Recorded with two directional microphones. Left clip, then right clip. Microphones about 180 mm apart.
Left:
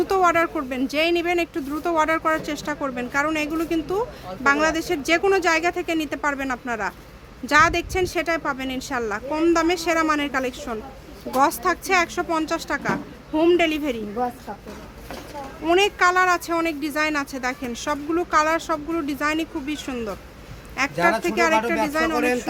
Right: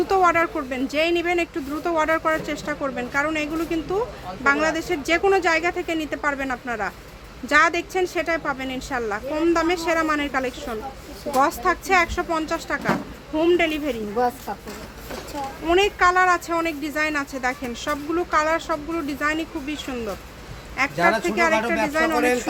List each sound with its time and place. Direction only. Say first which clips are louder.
0.1 s speech: right 1 dB; 20° left (ahead or behind)
15.6 s speech: even; 20° left (ahead or behind)
21.8 s speech: right 1 dB; 10° left (ahead or behind)